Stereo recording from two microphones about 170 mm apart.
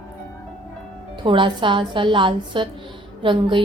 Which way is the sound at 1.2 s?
30° right (ahead or behind).